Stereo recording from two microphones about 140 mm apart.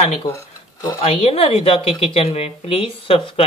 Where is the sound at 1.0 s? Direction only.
45° left (ahead or behind).